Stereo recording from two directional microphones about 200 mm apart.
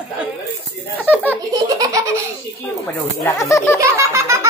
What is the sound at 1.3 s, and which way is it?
Baby laughter, 15° right (ahead or behind).